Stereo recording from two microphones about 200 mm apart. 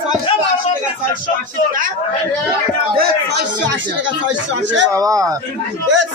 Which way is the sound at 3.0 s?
50° right (ahead or behind).